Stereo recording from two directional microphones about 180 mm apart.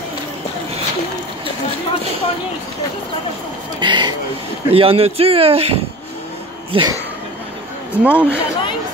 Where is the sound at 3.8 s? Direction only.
25° right (ahead or behind).